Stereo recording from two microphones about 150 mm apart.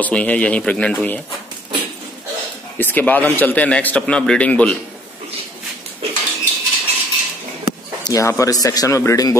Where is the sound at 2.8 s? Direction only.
10° left (ahead or behind).